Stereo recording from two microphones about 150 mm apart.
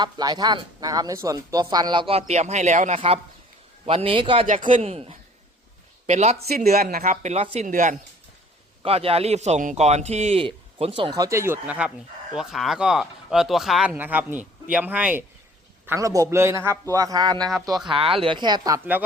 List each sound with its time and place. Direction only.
0.0 s speech: 25° right (ahead or behind)
4.4 s a man's voice: 60° right (ahead or behind)
6.7 s a man's voice: 80° right; by 7.7 s 45° right (ahead or behind)
7.7 s speech: 60° right (ahead or behind)
8.8 s a man's voice: 40° right (ahead or behind)
11.1 s speech: 20° right (ahead or behind)
15.9 s a man's voice: 20° right (ahead or behind)
17.8 s speech: 40° right (ahead or behind)